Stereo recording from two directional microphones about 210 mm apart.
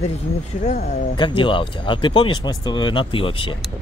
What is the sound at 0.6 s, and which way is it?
Speech, 35° left (ahead or behind).